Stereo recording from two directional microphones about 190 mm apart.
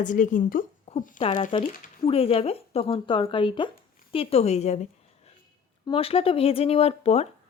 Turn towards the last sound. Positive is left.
turn(degrees=35)  # may be behind; listen again after turning